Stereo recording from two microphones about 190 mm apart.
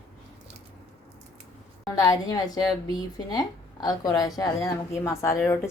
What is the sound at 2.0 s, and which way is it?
A woman's voice, 20° left (ahead or behind).